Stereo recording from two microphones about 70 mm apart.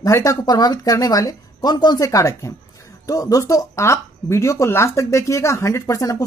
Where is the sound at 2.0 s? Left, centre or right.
Left.